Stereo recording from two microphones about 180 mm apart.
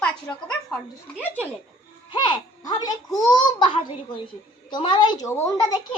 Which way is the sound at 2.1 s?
25° left (ahead or behind).